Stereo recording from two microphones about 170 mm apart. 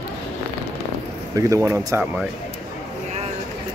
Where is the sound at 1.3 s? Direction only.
15° right (ahead or behind).